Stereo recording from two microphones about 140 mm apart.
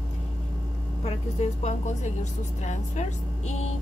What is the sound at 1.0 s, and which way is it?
A woman's voice, 50° left (ahead or behind).